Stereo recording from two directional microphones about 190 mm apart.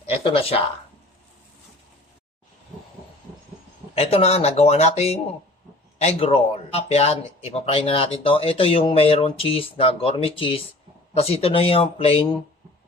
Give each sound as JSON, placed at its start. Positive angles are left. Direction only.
{"t": 0.0, "sound": "speech", "side_deg": 30}
{"t": 3.9, "sound": "speech", "side_deg": 30}